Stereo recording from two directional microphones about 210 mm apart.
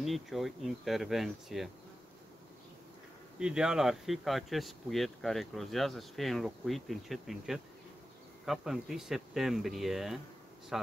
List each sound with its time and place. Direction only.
0.0 s speech: centre (ahead or behind)
3.3 s speech: 5° right (ahead or behind)